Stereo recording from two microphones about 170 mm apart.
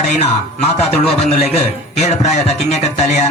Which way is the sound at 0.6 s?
40° left (ahead or behind).